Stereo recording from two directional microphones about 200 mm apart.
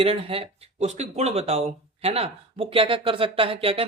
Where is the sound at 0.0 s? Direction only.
30° right (ahead or behind).